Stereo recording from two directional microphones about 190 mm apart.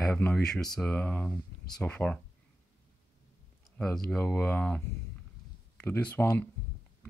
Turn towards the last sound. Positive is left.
turn(degrees=10)  # may be behind; listen again after turning